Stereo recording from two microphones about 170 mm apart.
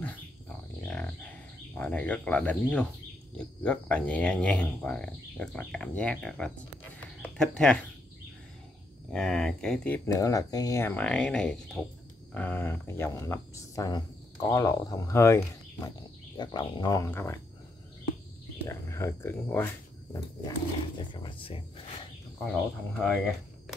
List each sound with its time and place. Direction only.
0.8 s bird: 5° left (ahead or behind)
1.8 s speech: 5° left (ahead or behind)
9.1 s speech: 5° left (ahead or behind)
18.7 s speech: 20° left (ahead or behind)
22.4 s speech: 5° left (ahead or behind)